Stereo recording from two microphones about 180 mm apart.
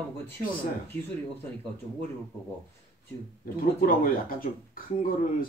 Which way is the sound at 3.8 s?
50° left (ahead or behind).